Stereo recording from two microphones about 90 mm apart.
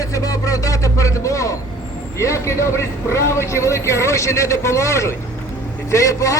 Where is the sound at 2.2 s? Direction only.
35° left (ahead or behind).